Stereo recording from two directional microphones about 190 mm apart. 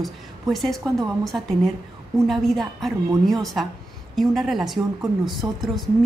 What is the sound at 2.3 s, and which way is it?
Speech, centre (ahead or behind).